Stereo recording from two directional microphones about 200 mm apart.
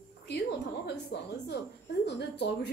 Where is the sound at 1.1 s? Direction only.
60° left (ahead or behind).